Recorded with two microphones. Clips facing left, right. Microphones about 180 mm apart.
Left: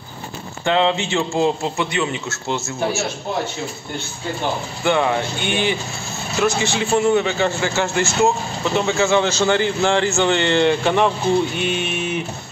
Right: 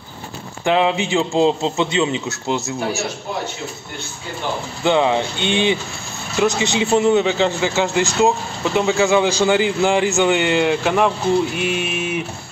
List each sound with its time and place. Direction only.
0.7 s a man's voice: 15° right (ahead or behind)
4.8 s a man's voice: 20° right (ahead or behind)